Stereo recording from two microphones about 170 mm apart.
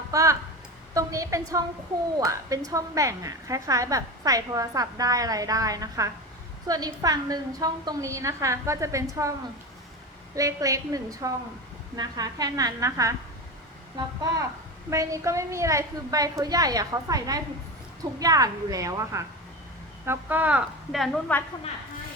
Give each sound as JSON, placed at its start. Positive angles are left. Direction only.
{"t": 0.1, "sound": "a woman's voice", "side_deg": -20}
{"t": 10.3, "sound": "a woman's voice", "side_deg": -20}